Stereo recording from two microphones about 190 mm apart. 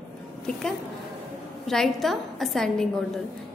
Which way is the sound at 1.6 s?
Centre (ahead or behind).